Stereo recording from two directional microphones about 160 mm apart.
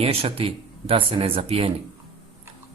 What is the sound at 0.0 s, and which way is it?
Speech, 35° right (ahead or behind).